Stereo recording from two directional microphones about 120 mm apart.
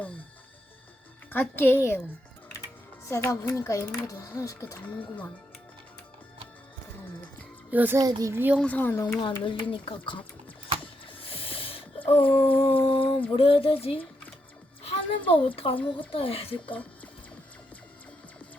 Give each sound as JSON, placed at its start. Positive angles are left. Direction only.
{"t": 1.3, "sound": "speech", "side_deg": 15}
{"t": 3.1, "sound": "speech", "side_deg": 25}
{"t": 4.9, "sound": "speech", "side_deg": 15}
{"t": 7.7, "sound": "a child's voice", "side_deg": -15}
{"t": 8.6, "sound": "speech", "side_deg": 15}
{"t": 9.2, "sound": "speech", "side_deg": 40}
{"t": 11.1, "sound": "music", "side_deg": 50}
{"t": 12.3, "sound": "a sound", "side_deg": 55}
{"t": 13.3, "sound": "speech", "side_deg": 50}
{"t": 14.8, "sound": "music", "side_deg": 50}
{"t": 15.4, "sound": "speech", "side_deg": 50}